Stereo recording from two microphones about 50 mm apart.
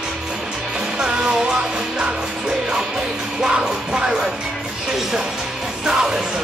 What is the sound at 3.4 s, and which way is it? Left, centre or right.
Music, centre.